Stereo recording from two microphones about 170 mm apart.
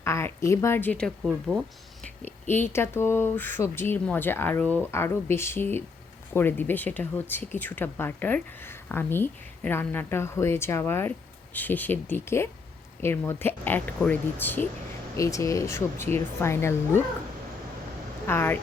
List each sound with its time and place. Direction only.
0.0 s speech: 15° left (ahead or behind)
18.3 s speech: 15° left (ahead or behind)